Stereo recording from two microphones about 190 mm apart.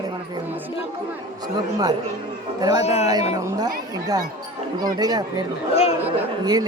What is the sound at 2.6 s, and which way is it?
Speech, 20° right (ahead or behind).